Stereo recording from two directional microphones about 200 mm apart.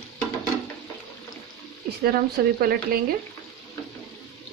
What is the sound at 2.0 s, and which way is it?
Speech, 50° right (ahead or behind).